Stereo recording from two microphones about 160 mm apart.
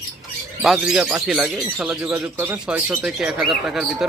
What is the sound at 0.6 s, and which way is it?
Speech, centre (ahead or behind).